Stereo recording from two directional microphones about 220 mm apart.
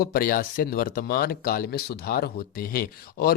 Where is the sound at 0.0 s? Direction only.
40° left (ahead or behind).